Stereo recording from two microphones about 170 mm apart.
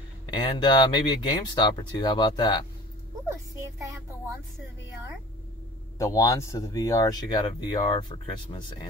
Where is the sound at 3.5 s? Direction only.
20° right (ahead or behind).